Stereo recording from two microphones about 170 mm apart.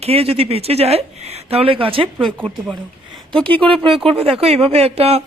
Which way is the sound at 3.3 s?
10° left (ahead or behind).